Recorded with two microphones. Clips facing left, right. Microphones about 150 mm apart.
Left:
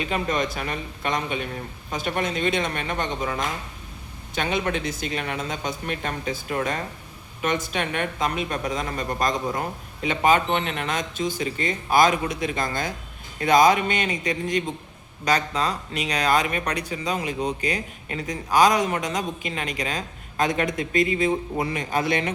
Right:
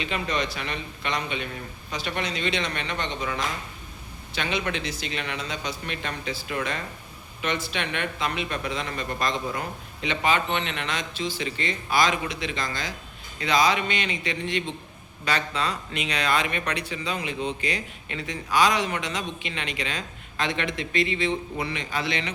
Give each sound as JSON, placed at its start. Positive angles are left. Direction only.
{"t": 0.0, "sound": "speech", "side_deg": 45}